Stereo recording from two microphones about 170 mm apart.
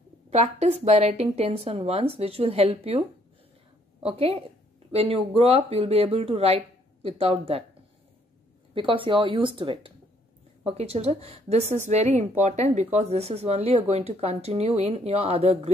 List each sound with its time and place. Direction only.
0.3 s a woman's voice: 40° right (ahead or behind)
4.0 s a woman's voice: 35° right (ahead or behind)
8.7 s a woman's voice: 30° right (ahead or behind)